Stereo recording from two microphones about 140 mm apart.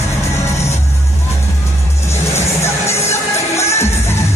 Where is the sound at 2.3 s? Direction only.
20° left (ahead or behind).